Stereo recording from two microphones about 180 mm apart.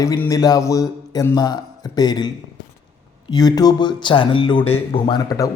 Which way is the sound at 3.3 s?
20° left (ahead or behind).